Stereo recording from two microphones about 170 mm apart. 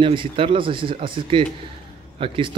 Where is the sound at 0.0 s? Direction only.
30° right (ahead or behind).